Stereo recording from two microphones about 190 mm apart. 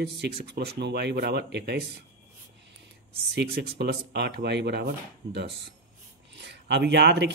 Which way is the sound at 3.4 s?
60° right (ahead or behind).